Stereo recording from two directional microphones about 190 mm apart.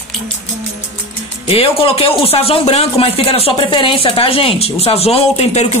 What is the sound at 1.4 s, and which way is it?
Speech, 30° left (ahead or behind).